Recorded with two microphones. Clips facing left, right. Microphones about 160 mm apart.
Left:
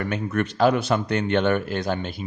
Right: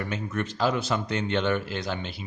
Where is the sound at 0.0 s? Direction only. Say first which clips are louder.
Left 5 dB; 60° left (ahead or behind).